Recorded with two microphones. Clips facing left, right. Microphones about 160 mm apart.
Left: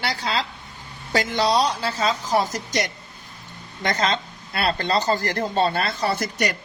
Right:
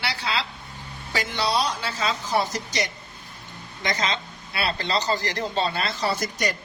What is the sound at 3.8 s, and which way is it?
A man's voice, 55° left (ahead or behind).